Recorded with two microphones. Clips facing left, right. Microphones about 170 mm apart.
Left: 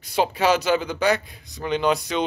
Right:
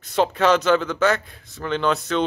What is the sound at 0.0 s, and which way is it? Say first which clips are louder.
A man's voice: right 2 dB; 10° left (ahead or behind).